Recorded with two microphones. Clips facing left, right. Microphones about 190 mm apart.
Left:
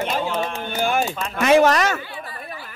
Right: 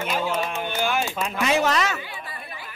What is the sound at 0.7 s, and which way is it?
Speech, 50° left (ahead or behind).